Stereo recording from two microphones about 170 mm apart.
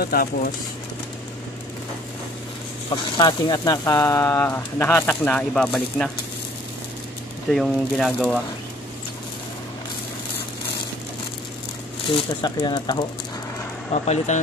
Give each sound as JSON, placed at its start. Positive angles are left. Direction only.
{"t": 0.0, "sound": "speech", "side_deg": 60}
{"t": 2.9, "sound": "speech", "side_deg": 25}
{"t": 7.4, "sound": "speech", "side_deg": 0}
{"t": 12.1, "sound": "speech", "side_deg": 30}
{"t": 14.0, "sound": "speech", "side_deg": 40}